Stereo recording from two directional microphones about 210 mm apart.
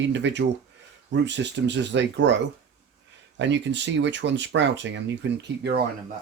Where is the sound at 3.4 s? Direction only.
60° right (ahead or behind).